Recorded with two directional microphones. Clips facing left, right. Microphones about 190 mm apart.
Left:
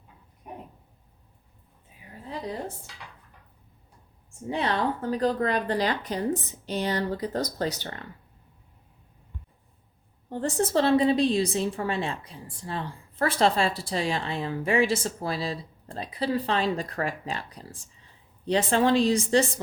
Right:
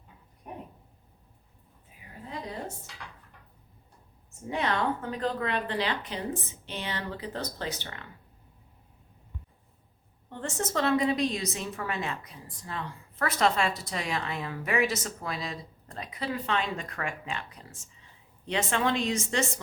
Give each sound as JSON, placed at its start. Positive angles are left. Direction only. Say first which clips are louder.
{"t": 4.4, "sound": "a woman's voice", "louder": "left 2 dB", "side_deg": 30}
{"t": 10.2, "sound": "a woman's voice", "louder": "left 7 dB", "side_deg": 35}